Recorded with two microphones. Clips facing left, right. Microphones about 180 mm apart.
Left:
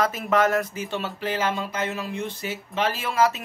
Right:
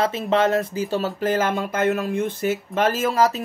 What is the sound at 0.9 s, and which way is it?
Speech, 40° right (ahead or behind).